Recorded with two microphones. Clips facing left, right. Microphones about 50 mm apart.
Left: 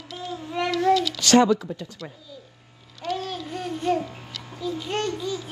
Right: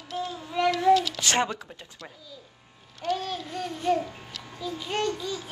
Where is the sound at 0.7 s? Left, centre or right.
Right.